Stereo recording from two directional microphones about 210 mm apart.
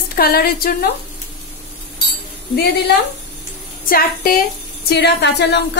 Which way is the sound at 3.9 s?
45° left (ahead or behind).